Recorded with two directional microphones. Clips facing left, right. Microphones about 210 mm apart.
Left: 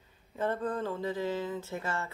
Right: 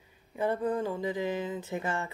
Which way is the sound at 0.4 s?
10° right (ahead or behind).